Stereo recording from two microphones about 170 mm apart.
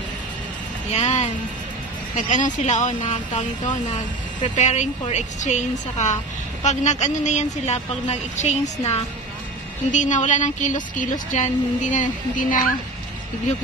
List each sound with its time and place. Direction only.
0.9 s a woman's voice: 40° left (ahead or behind)
2.3 s a woman's voice: 45° left (ahead or behind)